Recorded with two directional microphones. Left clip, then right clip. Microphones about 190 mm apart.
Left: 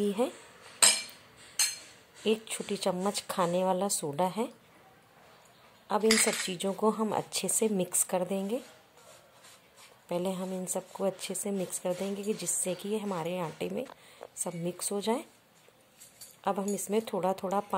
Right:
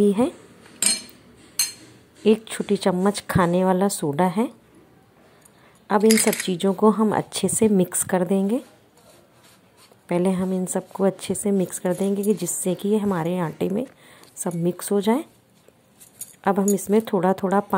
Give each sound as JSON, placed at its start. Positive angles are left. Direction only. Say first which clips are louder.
{"t": 0.0, "sound": "speech", "louder": "right 10 dB", "side_deg": -20}
{"t": 2.2, "sound": "speech", "louder": "right 11 dB", "side_deg": -20}
{"t": 5.9, "sound": "speech", "louder": "right 8 dB", "side_deg": -25}
{"t": 10.0, "sound": "speech", "louder": "right 10 dB", "side_deg": -25}
{"t": 16.3, "sound": "speech", "louder": "right 10 dB", "side_deg": -25}